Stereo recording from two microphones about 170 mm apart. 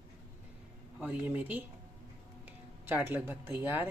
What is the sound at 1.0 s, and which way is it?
Speech, 10° right (ahead or behind).